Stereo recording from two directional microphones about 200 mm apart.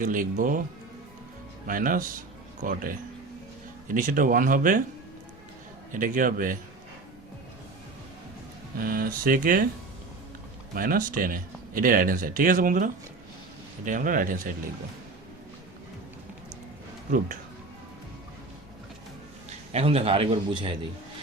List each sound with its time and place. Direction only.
0.0 s speech: 40° right (ahead or behind)
1.6 s speech: 45° right (ahead or behind)
5.9 s speech: 40° right (ahead or behind)
8.8 s speech: 45° right (ahead or behind)
10.8 s speech: 45° right (ahead or behind)
19.7 s a man's voice: 30° right (ahead or behind)